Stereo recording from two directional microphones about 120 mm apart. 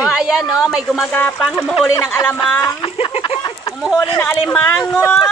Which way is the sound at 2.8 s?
50° left (ahead or behind).